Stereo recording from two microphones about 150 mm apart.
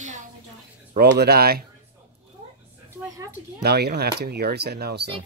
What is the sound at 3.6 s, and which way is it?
Speech, 90° right.